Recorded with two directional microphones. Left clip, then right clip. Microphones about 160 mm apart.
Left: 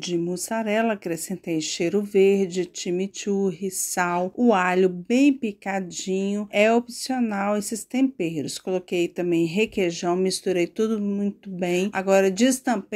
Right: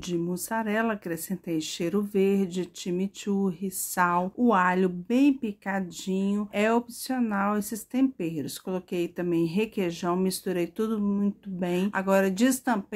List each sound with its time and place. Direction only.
0.0 s speech: 10° left (ahead or behind)